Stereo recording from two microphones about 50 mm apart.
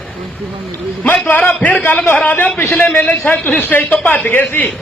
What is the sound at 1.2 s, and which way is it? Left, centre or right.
A man's voice, left.